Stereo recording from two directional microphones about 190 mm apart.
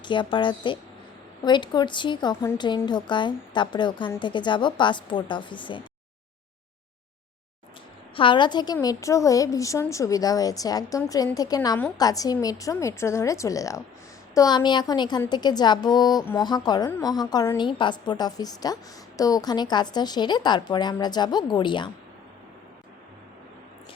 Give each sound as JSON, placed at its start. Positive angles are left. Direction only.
{"t": 0.0, "sound": "a woman's voice", "side_deg": 25}
{"t": 8.1, "sound": "a woman's voice", "side_deg": 25}